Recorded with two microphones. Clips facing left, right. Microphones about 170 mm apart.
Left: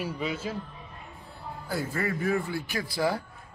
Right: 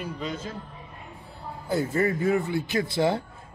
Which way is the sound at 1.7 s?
20° right (ahead or behind).